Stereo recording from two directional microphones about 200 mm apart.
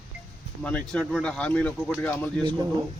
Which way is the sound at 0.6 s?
5° left (ahead or behind).